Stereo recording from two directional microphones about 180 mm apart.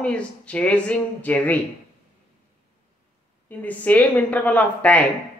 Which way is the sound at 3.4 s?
10° left (ahead or behind).